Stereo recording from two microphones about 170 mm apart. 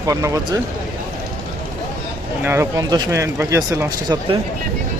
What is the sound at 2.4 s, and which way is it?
Speech, 15° right (ahead or behind).